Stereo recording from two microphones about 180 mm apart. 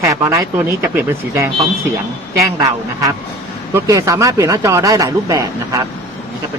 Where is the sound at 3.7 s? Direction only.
15° right (ahead or behind).